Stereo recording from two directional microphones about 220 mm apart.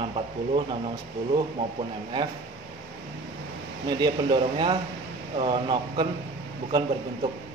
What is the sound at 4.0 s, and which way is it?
Speech, 20° right (ahead or behind).